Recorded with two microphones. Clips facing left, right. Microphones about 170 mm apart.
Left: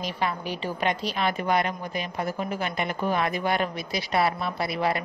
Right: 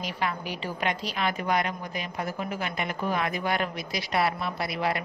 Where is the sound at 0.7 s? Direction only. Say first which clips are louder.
Left 3 dB; 30° left (ahead or behind).